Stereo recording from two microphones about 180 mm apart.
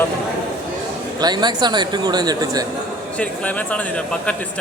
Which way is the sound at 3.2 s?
10° left (ahead or behind).